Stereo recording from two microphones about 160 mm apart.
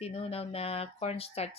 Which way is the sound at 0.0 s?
40° left (ahead or behind).